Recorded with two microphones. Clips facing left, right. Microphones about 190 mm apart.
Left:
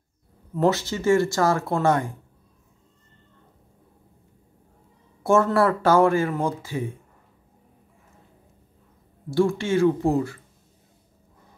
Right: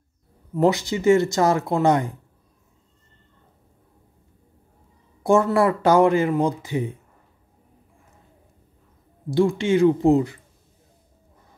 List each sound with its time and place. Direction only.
0.6 s speech: 15° right (ahead or behind)
5.2 s speech: 15° right (ahead or behind)
9.3 s speech: 15° right (ahead or behind)